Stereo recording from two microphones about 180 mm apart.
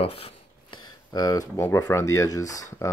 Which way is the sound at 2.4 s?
45° left (ahead or behind).